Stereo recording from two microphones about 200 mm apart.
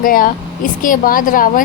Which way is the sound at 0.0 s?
45° left (ahead or behind).